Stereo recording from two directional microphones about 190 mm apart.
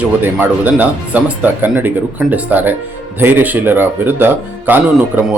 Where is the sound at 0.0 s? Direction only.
10° right (ahead or behind).